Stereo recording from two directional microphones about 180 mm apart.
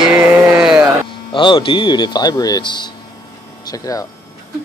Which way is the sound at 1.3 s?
25° left (ahead or behind).